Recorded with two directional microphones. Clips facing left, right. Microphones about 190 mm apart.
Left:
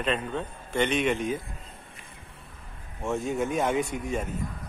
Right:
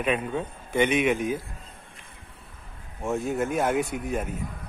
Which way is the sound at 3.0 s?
5° right (ahead or behind).